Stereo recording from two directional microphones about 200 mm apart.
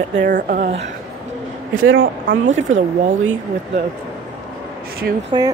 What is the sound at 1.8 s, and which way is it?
Speech, 75° right (ahead or behind).